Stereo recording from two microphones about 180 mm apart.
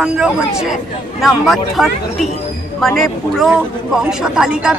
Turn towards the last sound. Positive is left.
turn(degrees=-5)  # may be behind; listen again after turning